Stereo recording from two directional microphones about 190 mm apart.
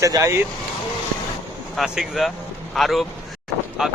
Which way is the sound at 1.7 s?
Centre (ahead or behind).